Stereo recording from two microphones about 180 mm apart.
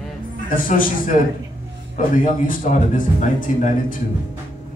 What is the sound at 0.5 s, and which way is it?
Speech, 50° left (ahead or behind).